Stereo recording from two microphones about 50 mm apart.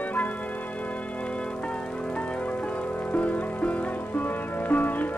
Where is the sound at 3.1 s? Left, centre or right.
Left.